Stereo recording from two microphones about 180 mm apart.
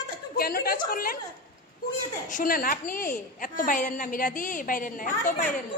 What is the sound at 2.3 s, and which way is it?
A woman's voice, 50° left (ahead or behind).